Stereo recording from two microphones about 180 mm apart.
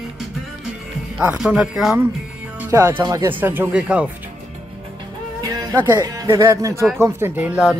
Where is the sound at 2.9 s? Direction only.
20° right (ahead or behind).